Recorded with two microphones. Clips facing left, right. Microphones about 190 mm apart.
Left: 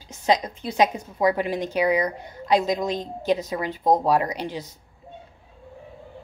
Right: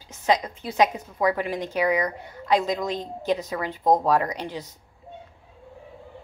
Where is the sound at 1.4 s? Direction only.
15° left (ahead or behind).